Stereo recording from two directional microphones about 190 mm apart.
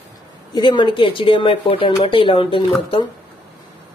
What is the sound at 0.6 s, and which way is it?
A man's voice, 25° left (ahead or behind).